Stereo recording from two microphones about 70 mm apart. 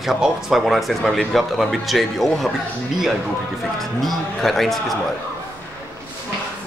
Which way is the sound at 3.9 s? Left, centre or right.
Centre.